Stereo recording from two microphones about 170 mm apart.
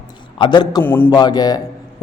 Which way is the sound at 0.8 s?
10° left (ahead or behind).